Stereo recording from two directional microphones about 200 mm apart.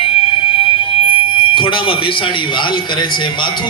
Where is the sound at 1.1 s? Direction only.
25° left (ahead or behind).